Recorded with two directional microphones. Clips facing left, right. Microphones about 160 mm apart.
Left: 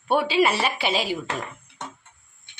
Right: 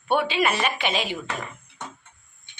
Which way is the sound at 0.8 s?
10° left (ahead or behind).